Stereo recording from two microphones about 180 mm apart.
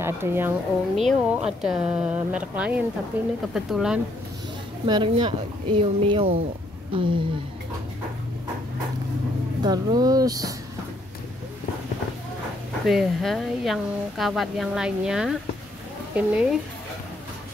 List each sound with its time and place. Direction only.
0.0 s speech: 15° right (ahead or behind)
0.9 s a woman's voice: 5° right (ahead or behind)
4.8 s a woman's voice: 25° right (ahead or behind)
9.6 s a woman's voice: 25° right (ahead or behind)
12.8 s a woman's voice: centre (ahead or behind)